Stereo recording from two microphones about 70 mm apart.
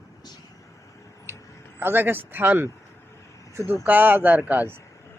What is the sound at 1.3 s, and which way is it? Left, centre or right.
Vehicle, right.